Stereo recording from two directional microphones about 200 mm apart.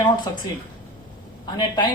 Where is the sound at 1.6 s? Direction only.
20° left (ahead or behind).